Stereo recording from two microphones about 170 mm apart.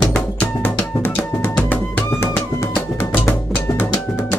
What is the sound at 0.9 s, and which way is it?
Drum, 10° left (ahead or behind).